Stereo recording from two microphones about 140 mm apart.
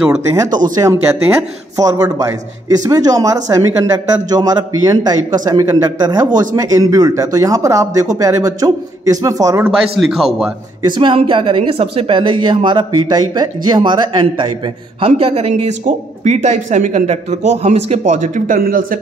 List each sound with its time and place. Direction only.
0.1 s speech: 20° right (ahead or behind)
1.8 s speech: 25° right (ahead or behind)
9.9 s a man's voice: centre (ahead or behind)
10.8 s speech: 35° right (ahead or behind)
15.0 s a man's voice: 45° right (ahead or behind)
15.8 s speech: 55° right (ahead or behind); by 18.9 s 85° right